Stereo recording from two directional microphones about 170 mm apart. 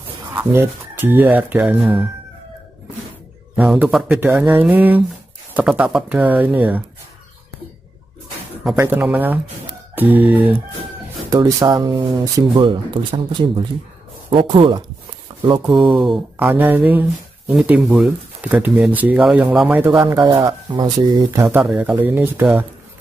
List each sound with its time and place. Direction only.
0.3 s speech: 15° right (ahead or behind)
3.5 s speech: 10° right (ahead or behind)
8.7 s speech: 15° right (ahead or behind)
11.2 s speech: 20° right (ahead or behind)
16.3 s speech: 10° right (ahead or behind)
20.0 s speech: 20° right (ahead or behind)
21.5 s speech: 5° right (ahead or behind)